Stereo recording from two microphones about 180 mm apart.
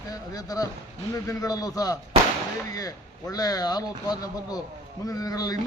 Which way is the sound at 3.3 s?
20° left (ahead or behind).